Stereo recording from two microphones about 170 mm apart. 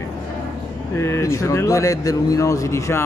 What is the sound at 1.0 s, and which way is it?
Speech, 15° left (ahead or behind).